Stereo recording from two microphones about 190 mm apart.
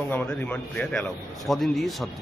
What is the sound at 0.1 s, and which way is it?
A man's voice, 10° left (ahead or behind).